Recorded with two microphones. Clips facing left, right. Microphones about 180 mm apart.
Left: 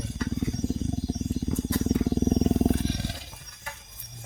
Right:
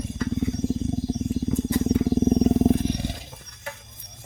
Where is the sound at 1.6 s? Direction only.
15° right (ahead or behind).